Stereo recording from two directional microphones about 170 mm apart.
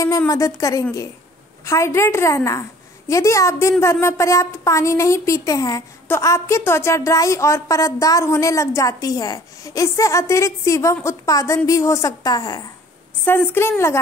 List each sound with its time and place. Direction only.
0.3 s a woman's voice: 20° left (ahead or behind)
13.2 s speech: 15° left (ahead or behind)